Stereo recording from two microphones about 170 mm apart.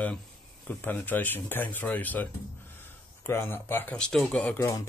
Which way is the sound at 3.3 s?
15° left (ahead or behind).